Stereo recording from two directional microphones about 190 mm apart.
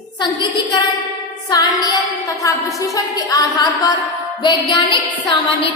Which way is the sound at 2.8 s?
20° left (ahead or behind).